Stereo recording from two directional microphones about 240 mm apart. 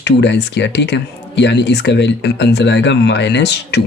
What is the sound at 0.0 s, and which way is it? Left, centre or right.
Speech, left.